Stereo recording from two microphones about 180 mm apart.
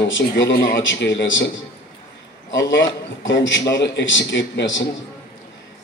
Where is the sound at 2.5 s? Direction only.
90° left.